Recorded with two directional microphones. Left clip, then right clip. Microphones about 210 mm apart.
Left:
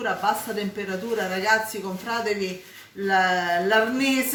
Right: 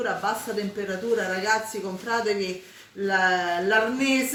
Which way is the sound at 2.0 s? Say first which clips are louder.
Right 1 dB; 40° left (ahead or behind).